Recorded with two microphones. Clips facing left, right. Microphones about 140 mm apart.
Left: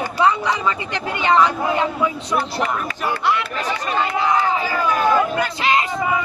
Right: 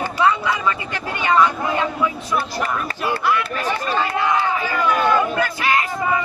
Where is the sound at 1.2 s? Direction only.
20° left (ahead or behind).